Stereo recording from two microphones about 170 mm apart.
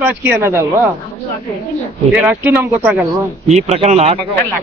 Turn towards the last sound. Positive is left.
turn(degrees=-40)  # may be behind; listen again after turning